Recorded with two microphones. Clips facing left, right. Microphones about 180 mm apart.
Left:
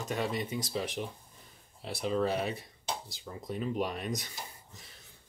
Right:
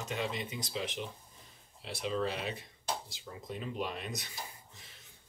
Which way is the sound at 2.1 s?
45° left (ahead or behind).